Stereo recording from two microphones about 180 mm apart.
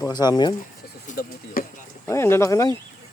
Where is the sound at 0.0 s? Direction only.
20° left (ahead or behind).